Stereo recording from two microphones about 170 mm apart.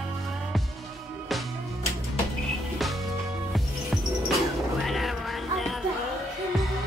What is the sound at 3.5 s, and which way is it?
Music, centre (ahead or behind).